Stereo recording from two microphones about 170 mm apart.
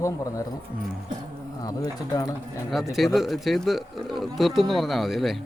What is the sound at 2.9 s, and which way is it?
Speech, centre (ahead or behind).